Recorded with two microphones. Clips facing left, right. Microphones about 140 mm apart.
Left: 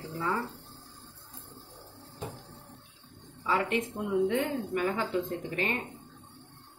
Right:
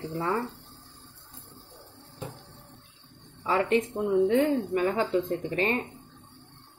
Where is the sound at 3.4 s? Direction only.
35° right (ahead or behind).